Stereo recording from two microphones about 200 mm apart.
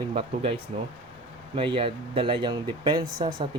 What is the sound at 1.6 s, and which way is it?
Speech, 25° right (ahead or behind).